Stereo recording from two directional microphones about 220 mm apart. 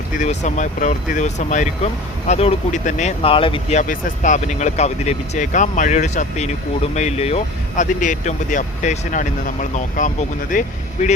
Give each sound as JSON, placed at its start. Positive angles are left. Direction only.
{"t": 0.2, "sound": "speech", "side_deg": 35}